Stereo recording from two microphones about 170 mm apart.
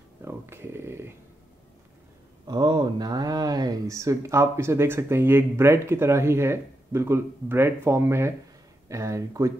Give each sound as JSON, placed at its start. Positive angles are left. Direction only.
{"t": 0.2, "sound": "speech", "side_deg": -15}
{"t": 2.4, "sound": "speech", "side_deg": -25}